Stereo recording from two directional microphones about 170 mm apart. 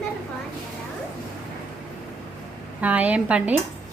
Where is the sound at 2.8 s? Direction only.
10° right (ahead or behind).